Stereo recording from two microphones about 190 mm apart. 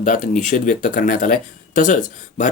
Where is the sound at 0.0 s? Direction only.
40° left (ahead or behind).